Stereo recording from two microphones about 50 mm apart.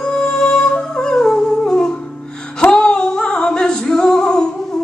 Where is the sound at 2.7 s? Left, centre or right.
Centre.